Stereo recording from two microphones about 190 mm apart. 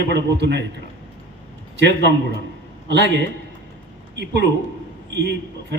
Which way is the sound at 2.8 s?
65° right (ahead or behind).